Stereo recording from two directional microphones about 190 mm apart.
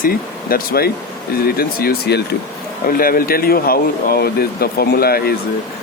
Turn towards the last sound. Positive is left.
turn(degrees=55)  # may be behind; listen again after turning